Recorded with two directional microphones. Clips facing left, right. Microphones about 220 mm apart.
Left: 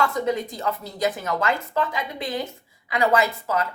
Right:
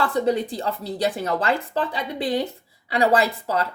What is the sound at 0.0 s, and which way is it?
Speech, 30° right (ahead or behind).